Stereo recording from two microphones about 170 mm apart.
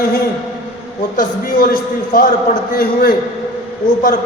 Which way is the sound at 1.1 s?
60° left (ahead or behind).